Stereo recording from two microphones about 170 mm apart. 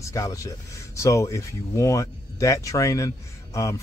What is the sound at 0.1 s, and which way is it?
Speech, 20° left (ahead or behind).